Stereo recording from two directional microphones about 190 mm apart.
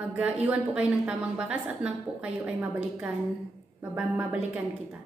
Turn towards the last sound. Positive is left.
turn(degrees=-5)  # may be behind; listen again after turning